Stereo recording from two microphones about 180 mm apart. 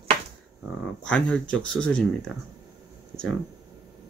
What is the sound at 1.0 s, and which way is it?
Speech, 5° left (ahead or behind).